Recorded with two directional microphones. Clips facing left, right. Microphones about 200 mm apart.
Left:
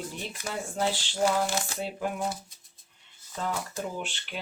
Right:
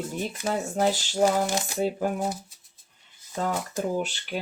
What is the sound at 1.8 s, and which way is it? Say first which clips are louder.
Speech: right 6 dB; 40° right (ahead or behind).